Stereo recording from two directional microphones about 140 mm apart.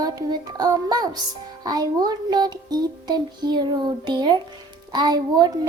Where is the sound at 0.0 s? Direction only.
25° right (ahead or behind).